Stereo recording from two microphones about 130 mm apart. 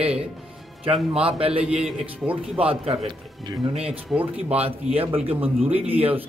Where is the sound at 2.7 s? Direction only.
50° right (ahead or behind).